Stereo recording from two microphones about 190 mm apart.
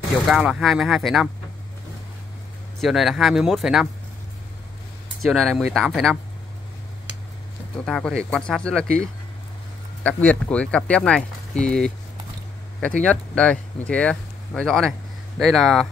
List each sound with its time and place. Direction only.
0.3 s speech: 5° right (ahead or behind)
2.8 s speech: centre (ahead or behind)
5.2 s speech: centre (ahead or behind)
7.8 s speech: 5° left (ahead or behind)
10.0 s speech: 5° left (ahead or behind)
13.1 s speech: 5° left (ahead or behind)